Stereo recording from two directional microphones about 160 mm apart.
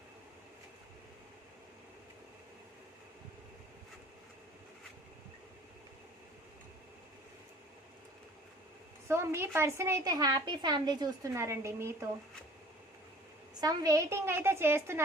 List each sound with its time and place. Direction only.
9.0 s a woman's voice: 15° right (ahead or behind)
13.5 s a woman's voice: 25° right (ahead or behind)